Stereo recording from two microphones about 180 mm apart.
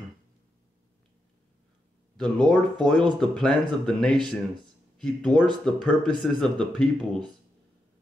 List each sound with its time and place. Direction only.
2.1 s speech: 5° left (ahead or behind)
2.8 s speech: 25° right (ahead or behind)
3.2 s speech: 5° left (ahead or behind)
5.3 s speech: 25° right (ahead or behind)
5.7 s speech: 5° left (ahead or behind)